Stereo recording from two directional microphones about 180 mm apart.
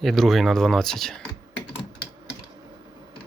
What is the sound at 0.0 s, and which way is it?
Speech, centre (ahead or behind).